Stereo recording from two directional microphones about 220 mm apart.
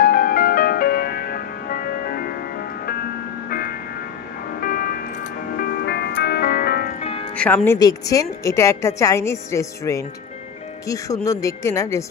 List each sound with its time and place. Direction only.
0.0 s music: 40° left (ahead or behind)
3.4 s music: 40° left (ahead or behind)
7.0 s music: 25° left (ahead or behind)
7.3 s a woman's voice: 5° left (ahead or behind)